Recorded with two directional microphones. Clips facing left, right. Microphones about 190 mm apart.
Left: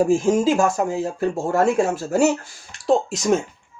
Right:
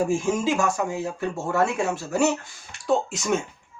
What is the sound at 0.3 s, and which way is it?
Speech, 35° left (ahead or behind).